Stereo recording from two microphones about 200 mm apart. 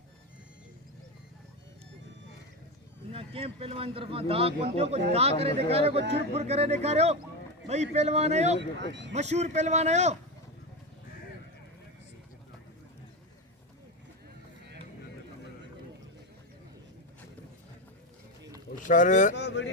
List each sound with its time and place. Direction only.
3.1 s a man's voice: 30° right (ahead or behind)
8.8 s speech: 60° right (ahead or behind)
9.1 s speech: 35° right (ahead or behind)
18.9 s a man's voice: 40° left (ahead or behind)
19.4 s speech: 60° left (ahead or behind)